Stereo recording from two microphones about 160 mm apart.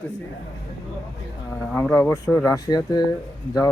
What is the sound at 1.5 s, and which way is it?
Speech, 5° left (ahead or behind).